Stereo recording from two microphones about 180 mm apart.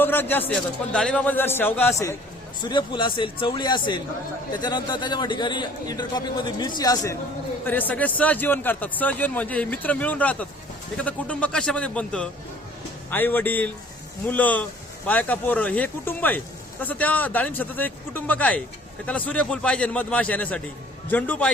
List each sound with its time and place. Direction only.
0.0 s a man's voice: 10° left (ahead or behind)